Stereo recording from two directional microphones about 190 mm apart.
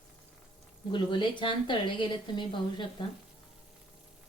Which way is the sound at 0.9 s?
25° left (ahead or behind).